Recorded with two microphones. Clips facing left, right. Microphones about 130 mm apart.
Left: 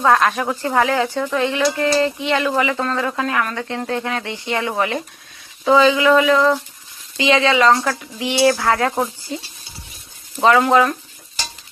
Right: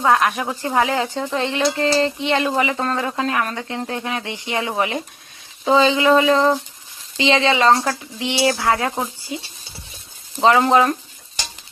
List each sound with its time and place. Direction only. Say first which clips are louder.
0.0 s speech: left 2 dB; 15° right (ahead or behind)
10.4 s speech: left 1 dB; 25° right (ahead or behind)